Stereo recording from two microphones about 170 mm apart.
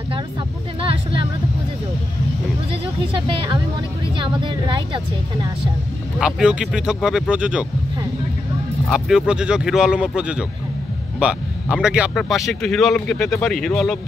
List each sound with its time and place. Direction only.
3.1 s a woman's voice: 30° right (ahead or behind)
6.1 s a man's voice: 5° right (ahead or behind)
8.8 s a man's voice: 5° right (ahead or behind)